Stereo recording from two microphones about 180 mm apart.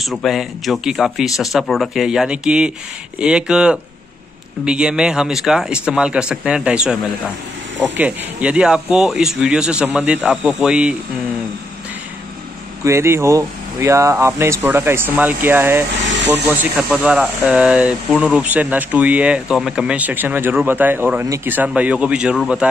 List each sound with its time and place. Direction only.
0.0 s a man's voice: centre (ahead or behind)
8.0 s a man's voice: 5° right (ahead or behind)
12.8 s speech: 15° right (ahead or behind)
16.0 s vehicle: 90° right
16.9 s a man's voice: 5° right (ahead or behind)